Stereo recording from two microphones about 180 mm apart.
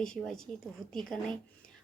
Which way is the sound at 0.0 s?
5° left (ahead or behind).